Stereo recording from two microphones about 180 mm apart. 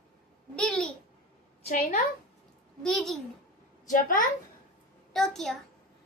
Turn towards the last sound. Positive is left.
turn(degrees=0)  # may be behind; listen again after turning